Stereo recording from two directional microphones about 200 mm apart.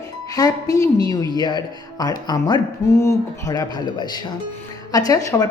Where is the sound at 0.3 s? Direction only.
20° left (ahead or behind).